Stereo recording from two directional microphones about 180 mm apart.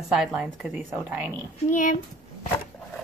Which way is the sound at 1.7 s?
50° left (ahead or behind).